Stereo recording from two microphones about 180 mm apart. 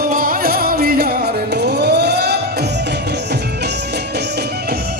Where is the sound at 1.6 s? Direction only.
65° right (ahead or behind).